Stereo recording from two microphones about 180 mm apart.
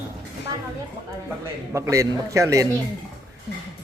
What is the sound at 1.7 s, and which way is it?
Speech, 15° right (ahead or behind).